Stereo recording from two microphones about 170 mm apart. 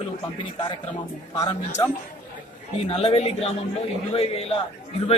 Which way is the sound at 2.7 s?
35° left (ahead or behind).